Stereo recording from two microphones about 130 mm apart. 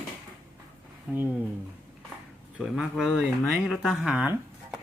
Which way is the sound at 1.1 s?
10° right (ahead or behind).